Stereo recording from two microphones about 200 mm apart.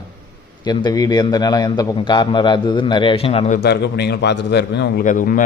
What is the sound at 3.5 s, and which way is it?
A man's voice, 55° left (ahead or behind).